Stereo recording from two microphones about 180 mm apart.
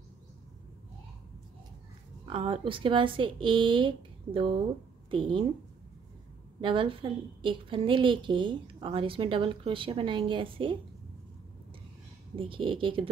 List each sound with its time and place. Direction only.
2.2 s a woman's voice: 30° right (ahead or behind)
6.6 s a woman's voice: 30° right (ahead or behind)
12.4 s a woman's voice: 30° right (ahead or behind)